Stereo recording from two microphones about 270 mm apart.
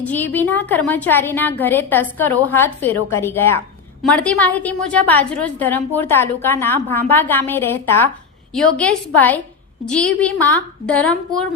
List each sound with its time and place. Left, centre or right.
0.0 s a woman's voice: centre